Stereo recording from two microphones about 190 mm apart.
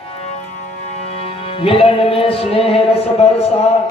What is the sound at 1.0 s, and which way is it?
Music, 30° left (ahead or behind).